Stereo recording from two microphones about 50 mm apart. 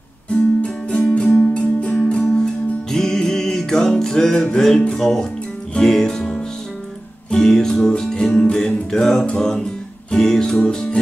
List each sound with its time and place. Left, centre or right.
0.3 s music: left
2.2 s music: centre